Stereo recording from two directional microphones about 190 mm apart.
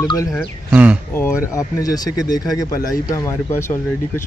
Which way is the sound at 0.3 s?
5° right (ahead or behind).